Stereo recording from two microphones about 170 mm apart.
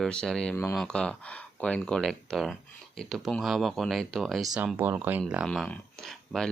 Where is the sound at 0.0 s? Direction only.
5° left (ahead or behind).